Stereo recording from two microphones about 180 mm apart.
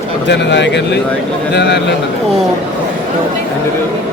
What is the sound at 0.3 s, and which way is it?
Speech, 75° left (ahead or behind).